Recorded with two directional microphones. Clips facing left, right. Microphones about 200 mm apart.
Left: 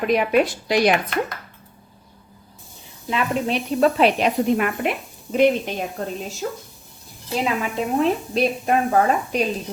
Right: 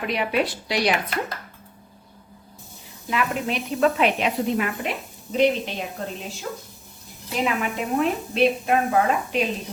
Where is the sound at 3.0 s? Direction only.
30° left (ahead or behind).